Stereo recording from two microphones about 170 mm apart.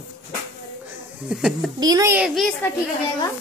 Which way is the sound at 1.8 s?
20° right (ahead or behind).